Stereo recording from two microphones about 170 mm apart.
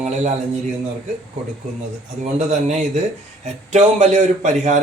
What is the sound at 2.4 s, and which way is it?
A man's voice, 40° right (ahead or behind).